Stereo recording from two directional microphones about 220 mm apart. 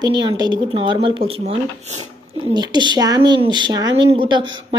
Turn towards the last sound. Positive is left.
turn(degrees=-20)  # may be behind; listen again after turning